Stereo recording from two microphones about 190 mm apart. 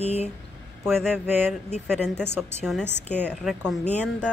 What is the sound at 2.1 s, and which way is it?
A woman's voice, 10° right (ahead or behind).